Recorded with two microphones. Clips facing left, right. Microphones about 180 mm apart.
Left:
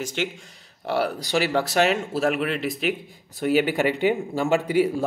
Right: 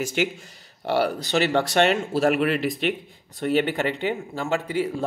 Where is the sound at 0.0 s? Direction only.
10° right (ahead or behind).